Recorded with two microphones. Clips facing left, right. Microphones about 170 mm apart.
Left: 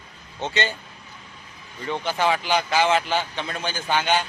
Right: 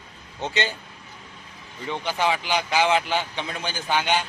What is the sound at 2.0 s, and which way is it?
A man's voice, 15° right (ahead or behind).